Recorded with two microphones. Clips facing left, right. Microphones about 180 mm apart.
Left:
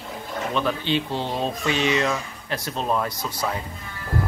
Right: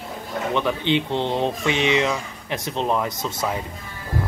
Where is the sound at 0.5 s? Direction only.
20° right (ahead or behind).